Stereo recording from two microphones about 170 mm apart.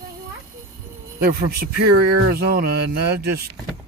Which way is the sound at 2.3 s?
65° right (ahead or behind).